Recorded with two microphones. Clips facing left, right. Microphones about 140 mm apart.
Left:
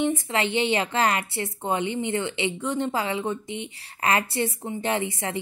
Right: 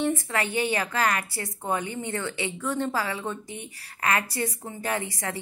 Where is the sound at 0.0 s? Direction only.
20° left (ahead or behind).